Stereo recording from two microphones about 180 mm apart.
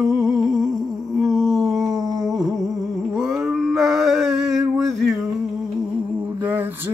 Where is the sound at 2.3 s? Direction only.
Centre (ahead or behind).